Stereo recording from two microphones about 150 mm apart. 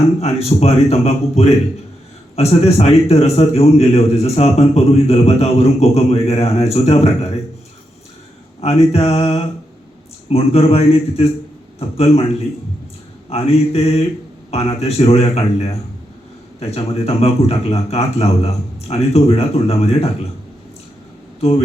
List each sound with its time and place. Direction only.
0.2 s a man's voice: 45° left (ahead or behind)
8.6 s a man's voice: 45° left (ahead or behind)
13.3 s a man's voice: 45° left (ahead or behind)